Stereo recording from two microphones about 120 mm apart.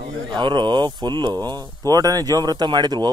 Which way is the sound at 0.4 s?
40° right (ahead or behind).